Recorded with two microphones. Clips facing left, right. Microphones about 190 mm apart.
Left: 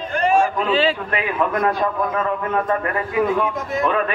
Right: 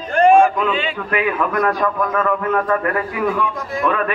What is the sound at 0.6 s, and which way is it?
A man's voice, 35° left (ahead or behind).